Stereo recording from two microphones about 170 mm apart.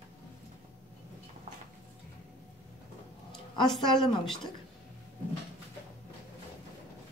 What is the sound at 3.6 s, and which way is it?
Speech, centre (ahead or behind).